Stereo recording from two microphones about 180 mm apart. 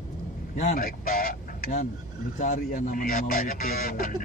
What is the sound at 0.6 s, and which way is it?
Speech, 50° left (ahead or behind).